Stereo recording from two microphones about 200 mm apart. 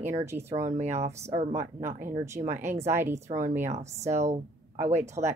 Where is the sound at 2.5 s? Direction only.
10° right (ahead or behind).